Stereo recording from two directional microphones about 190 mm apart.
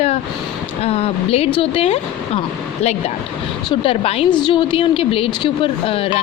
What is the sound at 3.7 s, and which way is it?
A woman's voice, 30° left (ahead or behind).